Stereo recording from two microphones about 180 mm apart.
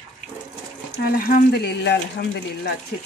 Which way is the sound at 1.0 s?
55° left (ahead or behind).